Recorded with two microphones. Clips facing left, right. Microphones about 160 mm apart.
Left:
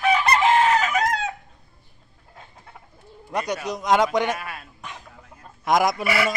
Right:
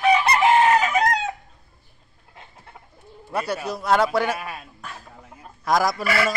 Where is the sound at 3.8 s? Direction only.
15° left (ahead or behind).